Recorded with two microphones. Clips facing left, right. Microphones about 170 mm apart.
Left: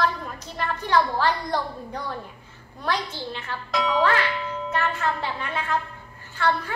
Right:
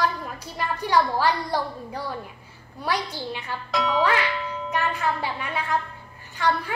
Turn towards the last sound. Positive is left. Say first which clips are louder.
# even
turn(degrees=-15)  # may be behind; listen again after turning